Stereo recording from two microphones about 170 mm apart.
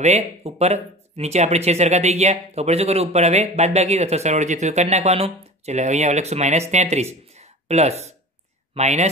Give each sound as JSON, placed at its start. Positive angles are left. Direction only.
{"t": 0.0, "sound": "speech", "side_deg": -40}